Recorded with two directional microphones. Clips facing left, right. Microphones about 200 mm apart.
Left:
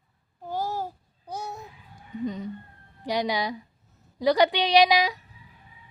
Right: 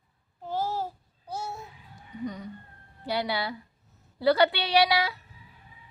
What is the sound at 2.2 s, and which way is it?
Speech, 20° left (ahead or behind).